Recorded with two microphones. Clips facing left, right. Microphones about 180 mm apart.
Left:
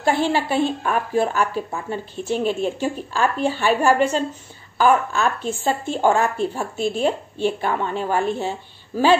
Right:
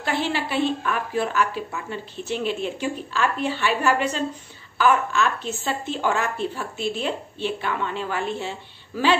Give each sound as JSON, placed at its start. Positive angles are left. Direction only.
{"t": 0.0, "sound": "speech", "side_deg": 45}
{"t": 6.8, "sound": "speech", "side_deg": 45}